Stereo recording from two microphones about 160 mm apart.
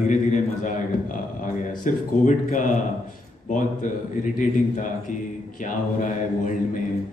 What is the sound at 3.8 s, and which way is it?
Speech, 55° left (ahead or behind).